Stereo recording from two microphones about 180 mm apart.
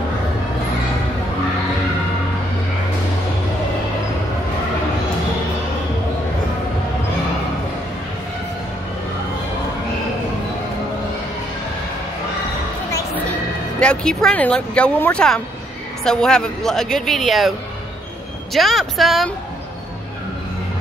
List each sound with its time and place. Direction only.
13.7 s speech: 5° left (ahead or behind)